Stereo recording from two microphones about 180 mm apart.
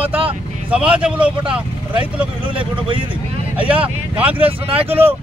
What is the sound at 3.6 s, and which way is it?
Speech, 10° right (ahead or behind).